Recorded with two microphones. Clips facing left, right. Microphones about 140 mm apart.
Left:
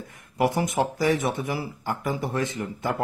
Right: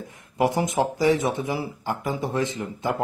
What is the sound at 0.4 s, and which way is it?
Speech, 20° right (ahead or behind).